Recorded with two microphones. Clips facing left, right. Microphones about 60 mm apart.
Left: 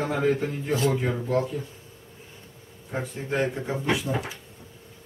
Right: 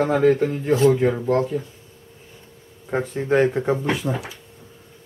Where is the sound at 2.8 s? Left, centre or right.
Right.